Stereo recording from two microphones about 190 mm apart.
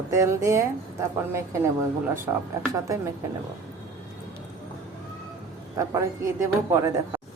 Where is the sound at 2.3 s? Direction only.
15° right (ahead or behind).